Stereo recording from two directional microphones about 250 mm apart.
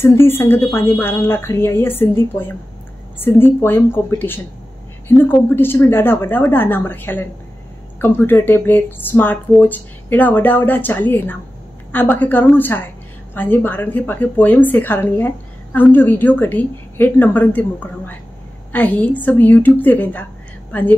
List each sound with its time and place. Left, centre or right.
0.0 s a woman's voice: centre